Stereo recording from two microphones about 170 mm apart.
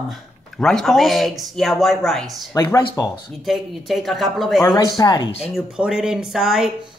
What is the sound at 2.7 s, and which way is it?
Speech, 20° left (ahead or behind).